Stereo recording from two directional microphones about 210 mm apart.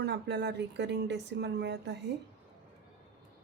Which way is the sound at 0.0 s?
55° right (ahead or behind).